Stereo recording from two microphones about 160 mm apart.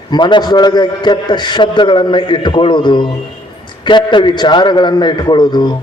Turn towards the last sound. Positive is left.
turn(degrees=25)  # may be behind; listen again after turning